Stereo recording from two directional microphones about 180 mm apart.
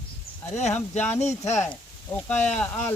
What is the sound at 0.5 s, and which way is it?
Speech, 40° left (ahead or behind).